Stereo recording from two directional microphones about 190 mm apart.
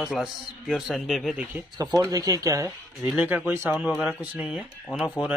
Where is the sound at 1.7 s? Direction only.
20° right (ahead or behind).